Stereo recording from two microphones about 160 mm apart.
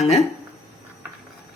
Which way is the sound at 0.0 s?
40° left (ahead or behind).